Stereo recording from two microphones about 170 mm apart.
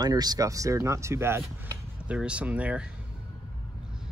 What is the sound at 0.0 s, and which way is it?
Speech, 25° right (ahead or behind).